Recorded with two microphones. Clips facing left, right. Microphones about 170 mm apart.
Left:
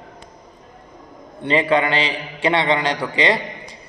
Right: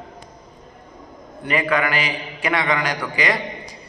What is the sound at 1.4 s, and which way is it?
A man's voice, 25° left (ahead or behind).